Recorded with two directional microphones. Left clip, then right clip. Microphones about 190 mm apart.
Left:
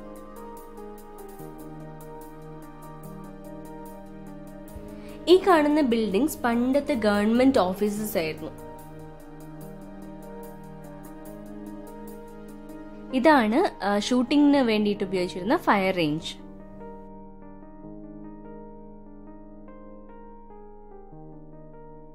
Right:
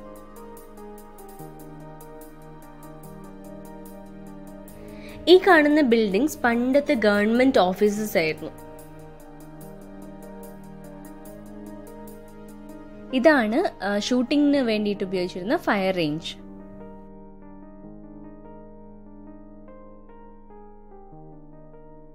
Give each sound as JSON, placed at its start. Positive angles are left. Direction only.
{"t": 0.4, "sound": "music", "side_deg": 0}
{"t": 3.4, "sound": "music", "side_deg": 0}
{"t": 4.9, "sound": "music", "side_deg": -20}
{"t": 5.8, "sound": "a woman's voice", "side_deg": -15}
{"t": 9.6, "sound": "music", "side_deg": 0}
{"t": 13.1, "sound": "a woman's voice", "side_deg": -15}